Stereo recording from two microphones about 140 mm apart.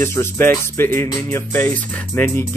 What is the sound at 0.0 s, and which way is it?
Speech, 15° left (ahead or behind).